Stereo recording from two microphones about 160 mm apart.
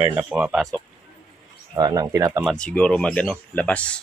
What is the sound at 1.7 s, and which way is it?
Speech, 25° right (ahead or behind).